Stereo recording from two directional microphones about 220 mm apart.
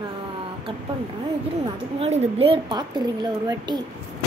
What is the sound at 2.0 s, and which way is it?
A woman's voice, 30° right (ahead or behind).